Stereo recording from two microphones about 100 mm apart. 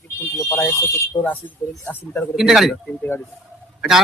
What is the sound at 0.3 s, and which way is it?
Speech, 25° left (ahead or behind).